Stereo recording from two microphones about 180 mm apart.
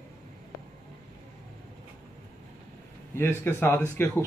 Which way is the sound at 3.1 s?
10° left (ahead or behind).